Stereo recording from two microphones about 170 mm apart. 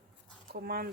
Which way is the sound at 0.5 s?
65° right (ahead or behind).